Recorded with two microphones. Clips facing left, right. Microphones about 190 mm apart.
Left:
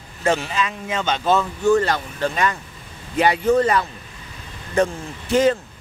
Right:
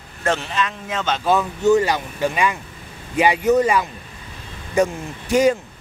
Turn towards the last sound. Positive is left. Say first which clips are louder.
# right 1 dB
turn(degrees=-15)  # may be behind; listen again after turning